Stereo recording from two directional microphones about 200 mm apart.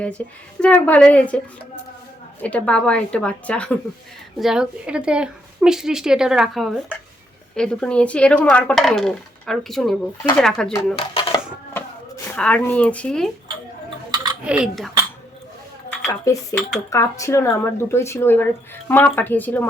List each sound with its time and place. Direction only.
0.2 s speech: 10° left (ahead or behind)
2.4 s speech: 5° left (ahead or behind)
11.2 s speech: 25° left (ahead or behind)
11.7 s a sound: 10° left (ahead or behind)
14.4 s speech: 5° right (ahead or behind)
16.0 s speech: 15° left (ahead or behind)